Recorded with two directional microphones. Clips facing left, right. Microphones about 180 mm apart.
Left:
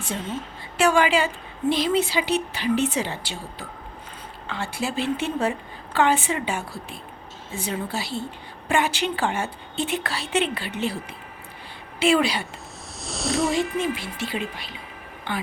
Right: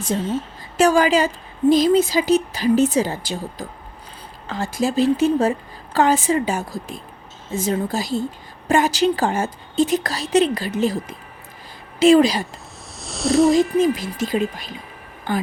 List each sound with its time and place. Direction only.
0.0 s a woman's voice: 40° right (ahead or behind)
13.0 s snake: centre (ahead or behind)
13.5 s a woman's voice: 40° right (ahead or behind)